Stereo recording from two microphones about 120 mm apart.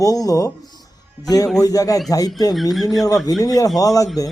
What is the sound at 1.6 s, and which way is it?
Speech, 30° left (ahead or behind).